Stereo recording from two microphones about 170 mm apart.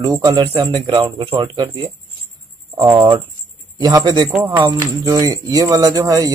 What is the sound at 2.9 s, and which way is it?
Speech, 25° right (ahead or behind).